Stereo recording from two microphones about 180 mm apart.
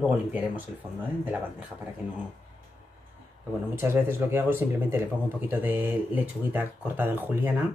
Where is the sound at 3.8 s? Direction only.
15° right (ahead or behind).